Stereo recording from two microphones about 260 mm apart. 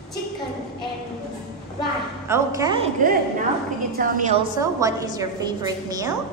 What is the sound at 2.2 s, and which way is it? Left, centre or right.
Speech, centre.